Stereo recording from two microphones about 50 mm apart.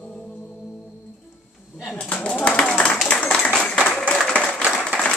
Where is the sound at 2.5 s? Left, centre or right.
Left.